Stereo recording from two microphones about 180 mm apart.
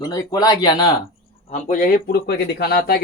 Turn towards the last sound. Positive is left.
turn(degrees=60)  # may be behind; listen again after turning